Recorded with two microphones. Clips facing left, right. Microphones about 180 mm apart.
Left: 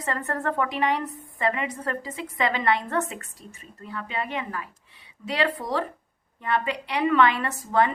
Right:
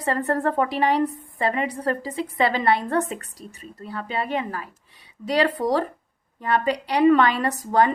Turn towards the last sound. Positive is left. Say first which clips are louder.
# right 3 dB
turn(degrees=-40)  # may be behind; listen again after turning